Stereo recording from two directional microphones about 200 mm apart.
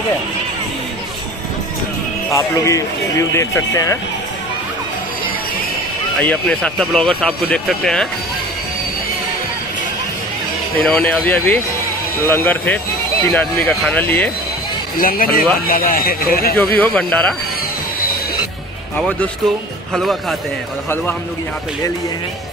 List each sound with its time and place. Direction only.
2.3 s speech: 15° left (ahead or behind)
6.1 s speech: 5° left (ahead or behind)
10.8 s speech: centre (ahead or behind)
15.0 s speech: 45° left (ahead or behind)
16.5 s speech: 5° left (ahead or behind)
19.9 s speech: centre (ahead or behind)